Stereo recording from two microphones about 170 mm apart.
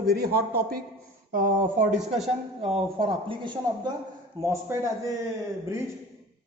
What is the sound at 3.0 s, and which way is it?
Speech, 30° right (ahead or behind).